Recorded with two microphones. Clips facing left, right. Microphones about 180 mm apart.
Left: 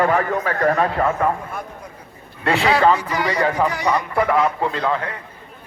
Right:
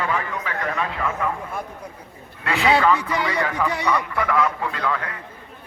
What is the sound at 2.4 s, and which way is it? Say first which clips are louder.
A man's voice: left 2 dB; 35° left (ahead or behind).